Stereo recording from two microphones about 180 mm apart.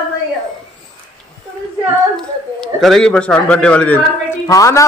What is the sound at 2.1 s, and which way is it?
A man's voice, centre (ahead or behind).